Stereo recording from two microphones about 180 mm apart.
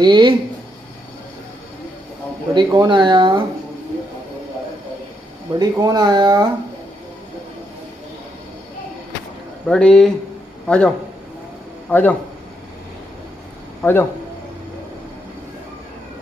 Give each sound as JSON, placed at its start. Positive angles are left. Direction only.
{"t": 0.0, "sound": "speech", "side_deg": -25}
{"t": 2.5, "sound": "speech", "side_deg": -25}
{"t": 5.6, "sound": "speech", "side_deg": -20}
{"t": 9.7, "sound": "speech", "side_deg": 5}
{"t": 11.9, "sound": "speech", "side_deg": 10}
{"t": 13.8, "sound": "speech", "side_deg": 10}